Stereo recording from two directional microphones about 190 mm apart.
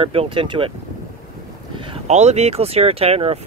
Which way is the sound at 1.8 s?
30° right (ahead or behind).